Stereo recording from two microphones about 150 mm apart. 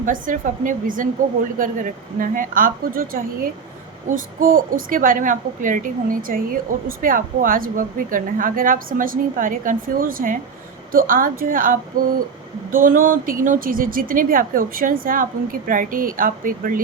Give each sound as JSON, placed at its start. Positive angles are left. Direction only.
{"t": 0.0, "sound": "a woman's voice", "side_deg": -60}